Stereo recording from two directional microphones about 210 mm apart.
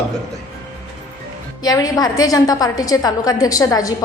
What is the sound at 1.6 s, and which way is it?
A woman's voice, 15° left (ahead or behind).